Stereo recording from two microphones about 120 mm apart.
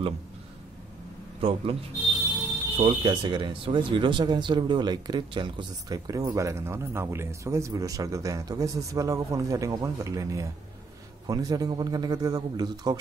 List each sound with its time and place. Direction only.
1.4 s a man's voice: 50° right (ahead or behind)
2.8 s a man's voice: 45° right (ahead or behind)